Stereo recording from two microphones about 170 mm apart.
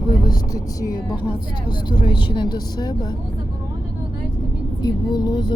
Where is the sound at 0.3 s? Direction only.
20° left (ahead or behind).